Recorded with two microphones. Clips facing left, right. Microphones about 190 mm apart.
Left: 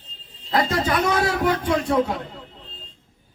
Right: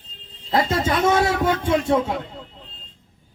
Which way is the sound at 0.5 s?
25° right (ahead or behind).